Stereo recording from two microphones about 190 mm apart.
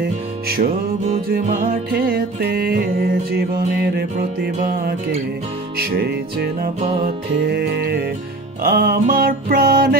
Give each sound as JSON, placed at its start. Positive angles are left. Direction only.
{"t": 0.0, "sound": "music", "side_deg": -55}
{"t": 6.8, "sound": "music", "side_deg": -35}
{"t": 7.2, "sound": "music", "side_deg": -60}